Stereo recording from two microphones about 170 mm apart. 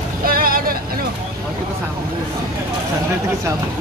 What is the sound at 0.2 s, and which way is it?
Vehicle, 60° right (ahead or behind).